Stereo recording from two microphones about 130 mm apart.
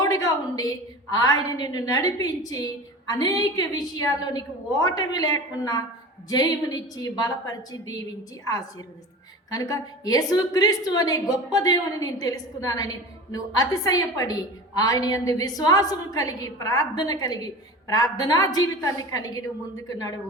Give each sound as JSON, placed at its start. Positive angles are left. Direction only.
{"t": 0.0, "sound": "a woman's voice", "side_deg": 30}
{"t": 9.5, "sound": "a woman's voice", "side_deg": 30}